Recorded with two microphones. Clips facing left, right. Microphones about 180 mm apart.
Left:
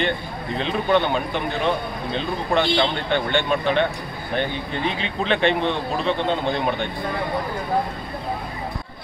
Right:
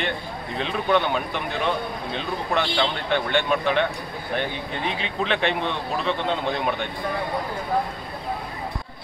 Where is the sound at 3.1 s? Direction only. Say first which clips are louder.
Left 1 dB; 5° right (ahead or behind).